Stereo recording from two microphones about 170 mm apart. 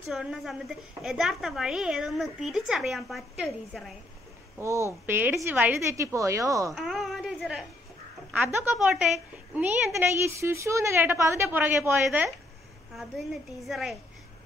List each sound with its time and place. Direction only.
0.1 s a woman's voice: centre (ahead or behind)
4.6 s a woman's voice: 15° right (ahead or behind)
6.7 s a woman's voice: centre (ahead or behind)